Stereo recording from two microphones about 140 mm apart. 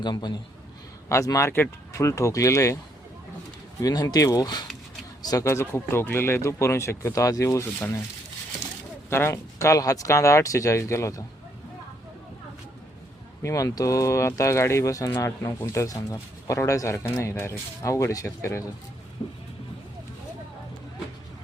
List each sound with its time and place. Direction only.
0.0 s a man's voice: 30° left (ahead or behind)
3.8 s speech: 25° left (ahead or behind)
9.0 s speech: 15° left (ahead or behind)
13.4 s speech: 25° left (ahead or behind)
19.2 s music: 50° left (ahead or behind)